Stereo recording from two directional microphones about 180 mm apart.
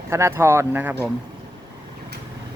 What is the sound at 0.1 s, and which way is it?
Speech, 15° right (ahead or behind).